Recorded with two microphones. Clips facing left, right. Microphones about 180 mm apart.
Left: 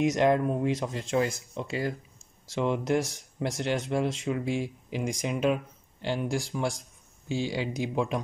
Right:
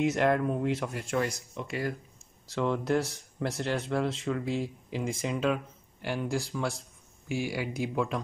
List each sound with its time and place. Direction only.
0.0 s speech: 15° left (ahead or behind)